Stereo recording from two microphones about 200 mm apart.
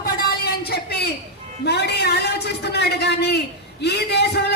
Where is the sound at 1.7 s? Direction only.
55° left (ahead or behind).